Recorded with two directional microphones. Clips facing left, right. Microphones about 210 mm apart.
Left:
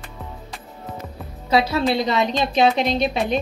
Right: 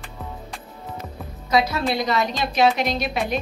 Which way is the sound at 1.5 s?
30° left (ahead or behind).